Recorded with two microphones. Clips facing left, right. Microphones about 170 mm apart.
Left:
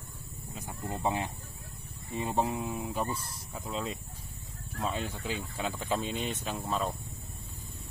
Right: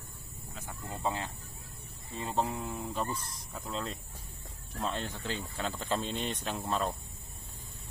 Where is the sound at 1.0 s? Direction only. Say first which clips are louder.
Left 2 dB; 15° left (ahead or behind); by 6.9 s centre (ahead or behind).